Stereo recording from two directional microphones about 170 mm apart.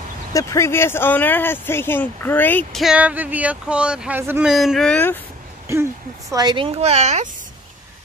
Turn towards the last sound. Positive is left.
turn(degrees=-40)  # may be behind; listen again after turning